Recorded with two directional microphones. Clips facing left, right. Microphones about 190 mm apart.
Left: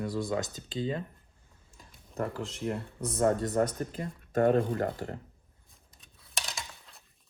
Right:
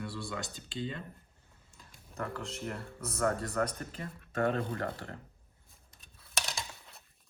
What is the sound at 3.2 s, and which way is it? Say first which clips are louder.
Speech: left 5 dB; 25° left (ahead or behind).